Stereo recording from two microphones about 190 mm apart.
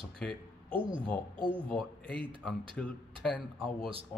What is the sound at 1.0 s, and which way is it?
Speech, 5° left (ahead or behind).